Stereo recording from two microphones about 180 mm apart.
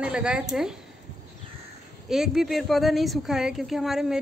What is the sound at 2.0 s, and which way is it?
A woman's voice, centre (ahead or behind).